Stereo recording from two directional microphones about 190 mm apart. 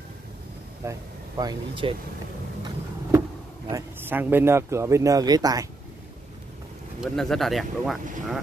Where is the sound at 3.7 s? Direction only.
15° right (ahead or behind).